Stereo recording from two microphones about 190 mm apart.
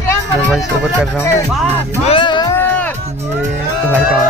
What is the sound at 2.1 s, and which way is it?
Music, 25° left (ahead or behind).